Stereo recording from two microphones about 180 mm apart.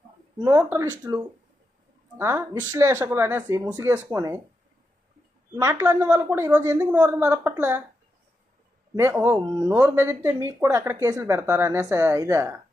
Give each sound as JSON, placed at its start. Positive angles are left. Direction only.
{"t": 0.3, "sound": "speech", "side_deg": -25}
{"t": 5.5, "sound": "speech", "side_deg": -20}
{"t": 9.0, "sound": "speech", "side_deg": -10}